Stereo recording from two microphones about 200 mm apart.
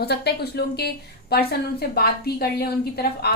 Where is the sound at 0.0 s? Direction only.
55° left (ahead or behind).